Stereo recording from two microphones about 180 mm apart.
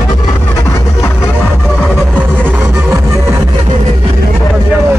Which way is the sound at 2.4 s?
10° right (ahead or behind).